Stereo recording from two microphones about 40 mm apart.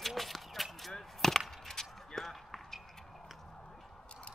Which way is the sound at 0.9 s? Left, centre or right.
Centre.